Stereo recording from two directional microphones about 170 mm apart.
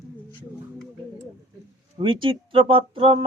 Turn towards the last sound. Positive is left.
turn(degrees=-30)  # may be behind; listen again after turning